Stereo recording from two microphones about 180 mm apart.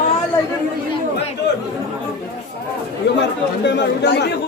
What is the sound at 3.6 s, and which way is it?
Speech, 70° left (ahead or behind).